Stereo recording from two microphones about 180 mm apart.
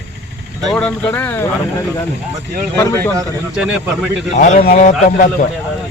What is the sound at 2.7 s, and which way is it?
Speech, 15° left (ahead or behind).